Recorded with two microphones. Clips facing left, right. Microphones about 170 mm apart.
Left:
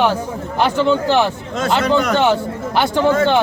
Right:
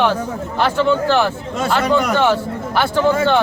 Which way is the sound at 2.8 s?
15° left (ahead or behind).